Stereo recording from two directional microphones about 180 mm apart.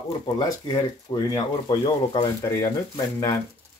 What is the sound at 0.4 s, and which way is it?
Speech, 20° left (ahead or behind).